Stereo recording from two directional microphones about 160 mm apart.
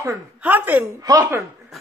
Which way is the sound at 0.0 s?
10° right (ahead or behind).